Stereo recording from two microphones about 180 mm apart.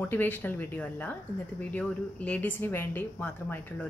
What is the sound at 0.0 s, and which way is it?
Speech, 10° left (ahead or behind).